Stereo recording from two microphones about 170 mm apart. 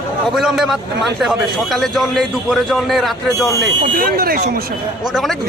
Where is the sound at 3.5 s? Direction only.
25° right (ahead or behind).